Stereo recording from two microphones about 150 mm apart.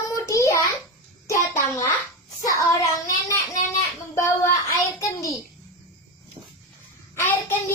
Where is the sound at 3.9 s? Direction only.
20° left (ahead or behind).